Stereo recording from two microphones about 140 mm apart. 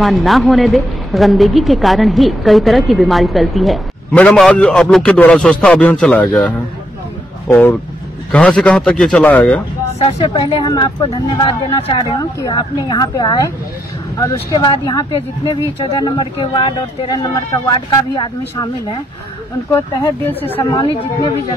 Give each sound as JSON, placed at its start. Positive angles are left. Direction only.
{"t": 0.0, "sound": "a woman's voice", "side_deg": 0}
{"t": 9.9, "sound": "speech", "side_deg": 45}
{"t": 12.2, "sound": "a woman's voice", "side_deg": 25}
{"t": 19.7, "sound": "a man's voice", "side_deg": 15}